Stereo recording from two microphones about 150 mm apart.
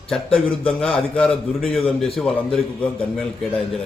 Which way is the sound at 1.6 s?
40° left (ahead or behind).